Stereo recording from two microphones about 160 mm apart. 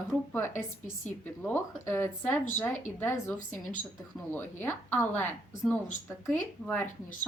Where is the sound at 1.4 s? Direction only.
15° left (ahead or behind).